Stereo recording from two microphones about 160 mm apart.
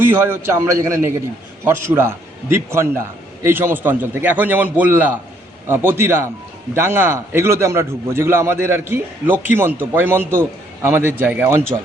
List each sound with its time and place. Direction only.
0.0 s a man's voice: 15° right (ahead or behind)